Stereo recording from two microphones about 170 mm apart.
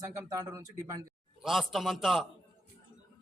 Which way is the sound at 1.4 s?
Centre (ahead or behind).